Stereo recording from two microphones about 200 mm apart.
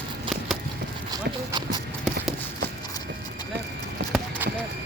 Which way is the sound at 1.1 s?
20° right (ahead or behind).